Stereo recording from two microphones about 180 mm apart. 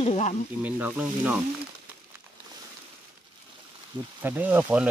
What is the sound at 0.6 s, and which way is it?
Speech, 10° right (ahead or behind).